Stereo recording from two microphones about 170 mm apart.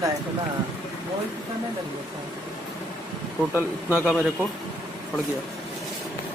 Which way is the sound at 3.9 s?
10° right (ahead or behind).